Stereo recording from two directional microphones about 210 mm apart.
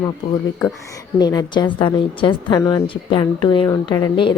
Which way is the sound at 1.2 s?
20° left (ahead or behind).